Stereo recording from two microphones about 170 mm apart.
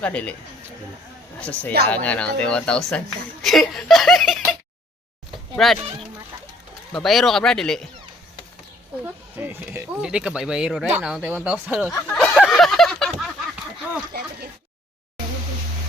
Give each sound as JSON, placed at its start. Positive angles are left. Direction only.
{"t": 0.0, "sound": "speech", "side_deg": 10}
{"t": 1.4, "sound": "speech", "side_deg": 10}
{"t": 5.5, "sound": "speech", "side_deg": 0}
{"t": 9.4, "sound": "speech", "side_deg": -10}
{"t": 12.0, "sound": "a sound", "side_deg": 5}